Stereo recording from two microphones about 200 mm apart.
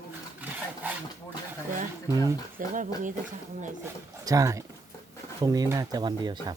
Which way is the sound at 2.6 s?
40° right (ahead or behind).